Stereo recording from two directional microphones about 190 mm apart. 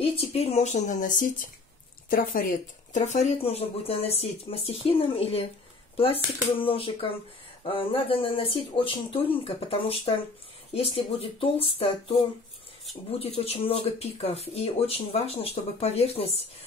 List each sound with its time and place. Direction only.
0.0 s speech: 30° left (ahead or behind)
13.2 s speech: 30° left (ahead or behind)